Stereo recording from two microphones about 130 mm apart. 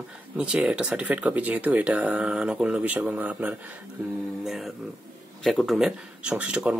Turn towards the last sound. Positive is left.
turn(degrees=-10)  # may be behind; listen again after turning